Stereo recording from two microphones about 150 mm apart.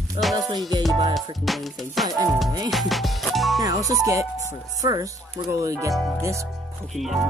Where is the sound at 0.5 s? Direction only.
25° right (ahead or behind).